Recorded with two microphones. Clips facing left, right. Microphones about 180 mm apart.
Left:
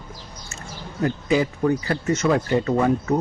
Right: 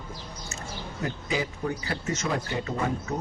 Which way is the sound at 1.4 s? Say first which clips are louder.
Left 9 dB; 60° left (ahead or behind).